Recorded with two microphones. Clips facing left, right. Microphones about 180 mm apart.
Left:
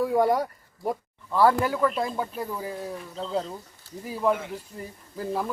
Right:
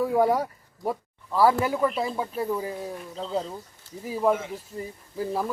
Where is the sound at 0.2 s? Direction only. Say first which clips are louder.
Even; 10° right (ahead or behind).